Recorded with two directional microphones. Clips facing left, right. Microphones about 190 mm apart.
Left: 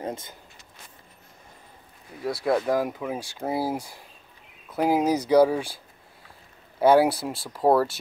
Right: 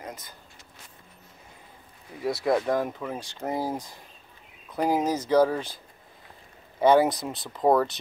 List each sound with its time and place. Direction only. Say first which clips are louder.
0.0 s speech: left 7 dB; 25° left (ahead or behind)
2.4 s speech: left 2 dB; 5° left (ahead or behind)
6.8 s speech: left 1 dB; 5° left (ahead or behind)